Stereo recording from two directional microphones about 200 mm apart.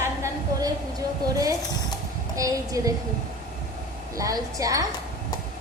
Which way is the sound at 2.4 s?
15° right (ahead or behind).